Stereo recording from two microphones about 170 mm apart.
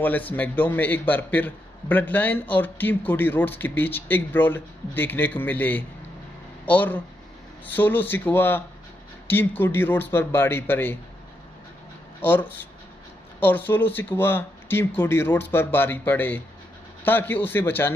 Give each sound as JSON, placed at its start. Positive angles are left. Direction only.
{"t": 0.0, "sound": "a man's voice", "side_deg": 10}
{"t": 12.2, "sound": "a man's voice", "side_deg": 10}